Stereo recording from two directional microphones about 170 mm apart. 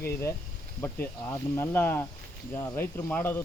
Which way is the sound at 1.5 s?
10° left (ahead or behind).